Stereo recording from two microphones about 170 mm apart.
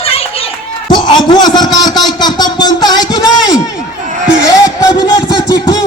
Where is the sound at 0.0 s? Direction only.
35° left (ahead or behind).